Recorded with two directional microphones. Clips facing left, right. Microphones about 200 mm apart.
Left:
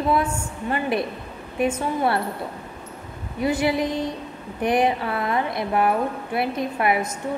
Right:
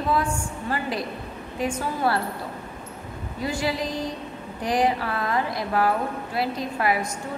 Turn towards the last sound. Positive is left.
turn(degrees=25)  # may be behind; listen again after turning